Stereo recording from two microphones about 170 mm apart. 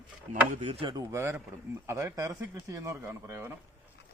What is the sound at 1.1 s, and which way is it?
Speech, 15° right (ahead or behind).